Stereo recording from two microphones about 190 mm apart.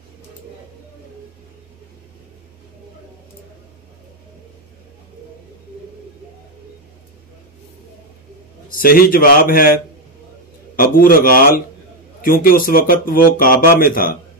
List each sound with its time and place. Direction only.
8.6 s speech: 50° left (ahead or behind)
10.8 s a man's voice: 50° left (ahead or behind)